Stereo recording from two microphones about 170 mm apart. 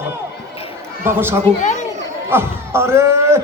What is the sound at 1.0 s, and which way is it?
A man's voice, 15° right (ahead or behind).